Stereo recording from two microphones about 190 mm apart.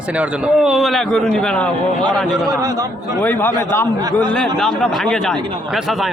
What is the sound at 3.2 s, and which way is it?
Speech, 10° left (ahead or behind).